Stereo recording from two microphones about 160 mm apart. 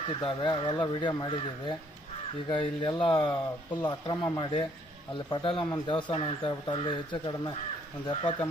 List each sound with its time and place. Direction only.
0.2 s speech: 30° left (ahead or behind)